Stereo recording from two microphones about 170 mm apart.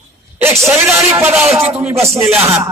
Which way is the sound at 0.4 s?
15° right (ahead or behind).